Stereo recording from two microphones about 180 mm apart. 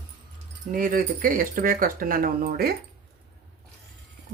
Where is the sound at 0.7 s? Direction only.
50° right (ahead or behind).